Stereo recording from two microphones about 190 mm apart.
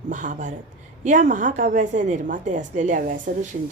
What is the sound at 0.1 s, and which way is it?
A woman's voice, 45° right (ahead or behind).